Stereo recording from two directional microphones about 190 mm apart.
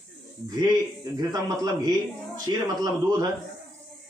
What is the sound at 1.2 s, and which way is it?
A man's voice, 20° right (ahead or behind).